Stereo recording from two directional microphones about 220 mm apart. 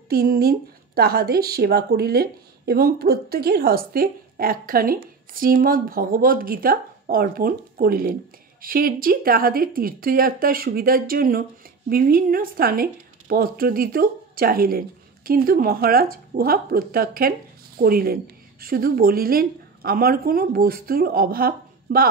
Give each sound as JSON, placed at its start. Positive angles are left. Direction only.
{"t": 0.1, "sound": "a woman's voice", "side_deg": -45}